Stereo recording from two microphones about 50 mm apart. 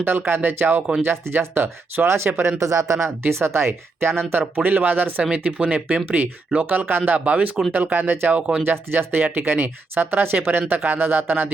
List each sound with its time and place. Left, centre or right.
0.3 s speech: right
1.0 s speech: right
5.3 s speech: right
6.7 s speech: right
7.3 s speech: right
7.7 s speech: right
8.3 s speech: right
8.6 s speech: right